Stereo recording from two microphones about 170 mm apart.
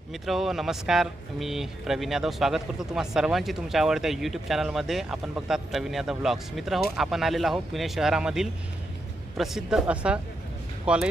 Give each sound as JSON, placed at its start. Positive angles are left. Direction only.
{"t": 0.1, "sound": "speech", "side_deg": 0}